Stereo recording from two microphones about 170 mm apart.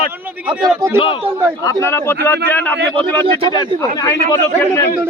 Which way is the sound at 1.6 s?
15° left (ahead or behind).